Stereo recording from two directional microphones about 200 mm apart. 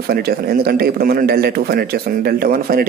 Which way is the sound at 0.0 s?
50° right (ahead or behind).